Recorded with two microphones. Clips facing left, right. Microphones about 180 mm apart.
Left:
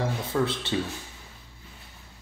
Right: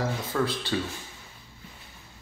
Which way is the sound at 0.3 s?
25° left (ahead or behind).